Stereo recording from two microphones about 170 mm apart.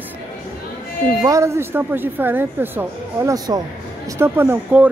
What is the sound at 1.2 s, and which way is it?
A woman's voice, 20° right (ahead or behind).